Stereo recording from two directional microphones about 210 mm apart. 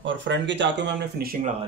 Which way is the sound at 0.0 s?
60° right (ahead or behind).